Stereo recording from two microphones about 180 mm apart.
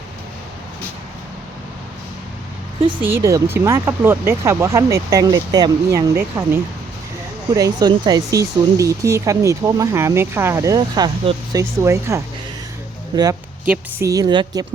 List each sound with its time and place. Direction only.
3.2 s a woman's voice: 15° right (ahead or behind)